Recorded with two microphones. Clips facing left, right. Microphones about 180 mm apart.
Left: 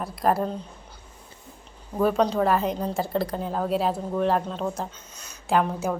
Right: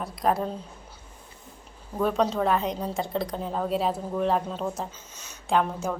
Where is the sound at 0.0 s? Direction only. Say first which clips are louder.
Left 2 dB; centre (ahead or behind).